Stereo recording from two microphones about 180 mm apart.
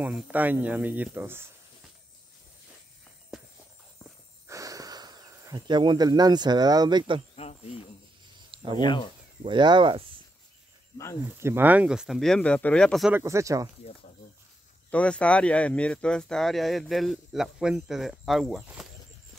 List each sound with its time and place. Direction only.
0.0 s speech: 10° right (ahead or behind)
3.3 s walk: 5° right (ahead or behind)
4.5 s speech: 20° right (ahead or behind)
7.3 s a sound: 35° left (ahead or behind)
8.7 s speech: 25° left (ahead or behind)
9.4 s speech: 25° right (ahead or behind)
11.3 s speech: 15° right (ahead or behind); by 13.1 s 5° left (ahead or behind)
13.1 s speech: 15° right (ahead or behind)
14.9 s speech: 5° left (ahead or behind)